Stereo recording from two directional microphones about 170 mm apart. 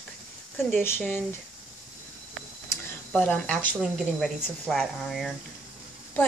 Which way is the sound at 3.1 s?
5° left (ahead or behind).